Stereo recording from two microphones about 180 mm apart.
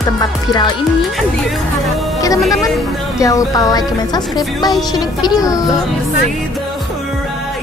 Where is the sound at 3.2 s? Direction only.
20° left (ahead or behind).